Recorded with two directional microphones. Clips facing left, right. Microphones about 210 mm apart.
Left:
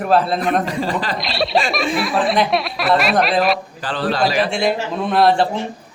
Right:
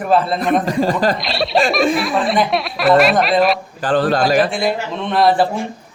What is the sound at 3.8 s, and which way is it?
Speech, 45° right (ahead or behind).